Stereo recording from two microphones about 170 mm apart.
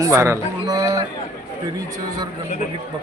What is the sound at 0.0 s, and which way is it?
Speech, 15° right (ahead or behind).